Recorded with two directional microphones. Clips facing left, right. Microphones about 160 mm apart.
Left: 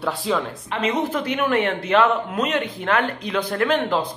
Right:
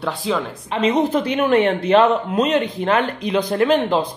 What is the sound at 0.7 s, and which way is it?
A man's voice, 25° right (ahead or behind).